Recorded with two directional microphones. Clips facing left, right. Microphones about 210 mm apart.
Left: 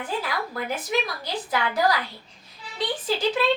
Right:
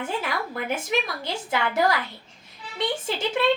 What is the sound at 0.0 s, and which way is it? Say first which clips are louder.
A woman's voice: right 1 dB; 25° right (ahead or behind).